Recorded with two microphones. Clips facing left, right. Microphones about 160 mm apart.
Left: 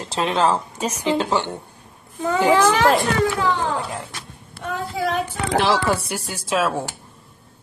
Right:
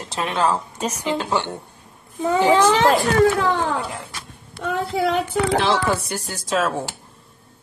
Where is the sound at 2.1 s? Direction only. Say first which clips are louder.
Right 1 dB; 20° right (ahead or behind).